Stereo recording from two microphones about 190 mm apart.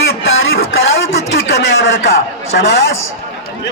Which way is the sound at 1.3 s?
70° left (ahead or behind).